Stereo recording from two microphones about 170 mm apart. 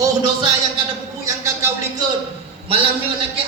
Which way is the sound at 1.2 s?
20° right (ahead or behind).